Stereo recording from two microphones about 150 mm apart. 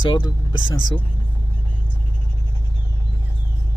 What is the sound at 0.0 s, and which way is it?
Speech, 30° left (ahead or behind).